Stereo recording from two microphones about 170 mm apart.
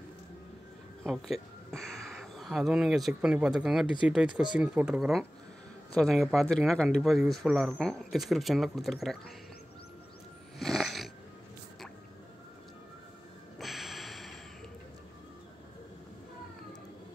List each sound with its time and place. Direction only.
1.0 s speech: centre (ahead or behind)
10.6 s cat: centre (ahead or behind)
13.6 s a sound: centre (ahead or behind)